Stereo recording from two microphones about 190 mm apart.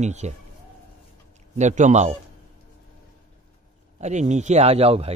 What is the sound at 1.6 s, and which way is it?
Speech, 40° right (ahead or behind).